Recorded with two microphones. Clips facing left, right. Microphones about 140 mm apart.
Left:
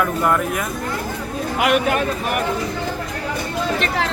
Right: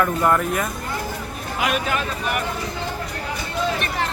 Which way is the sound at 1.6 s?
60° left (ahead or behind).